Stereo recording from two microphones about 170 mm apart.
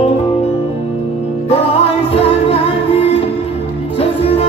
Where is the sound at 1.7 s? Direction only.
35° left (ahead or behind).